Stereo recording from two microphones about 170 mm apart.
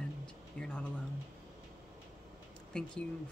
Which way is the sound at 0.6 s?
5° left (ahead or behind).